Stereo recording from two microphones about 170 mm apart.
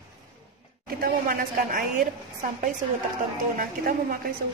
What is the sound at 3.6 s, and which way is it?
Speech, 55° right (ahead or behind).